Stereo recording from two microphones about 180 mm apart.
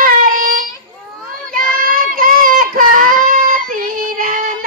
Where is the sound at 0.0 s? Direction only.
50° right (ahead or behind).